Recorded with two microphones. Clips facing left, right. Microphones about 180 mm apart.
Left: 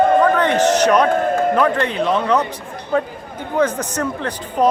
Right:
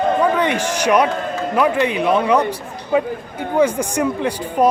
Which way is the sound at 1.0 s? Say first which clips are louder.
Left 5 dB; 50° left (ahead or behind).